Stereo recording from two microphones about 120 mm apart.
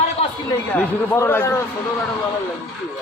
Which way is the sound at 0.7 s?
20° left (ahead or behind).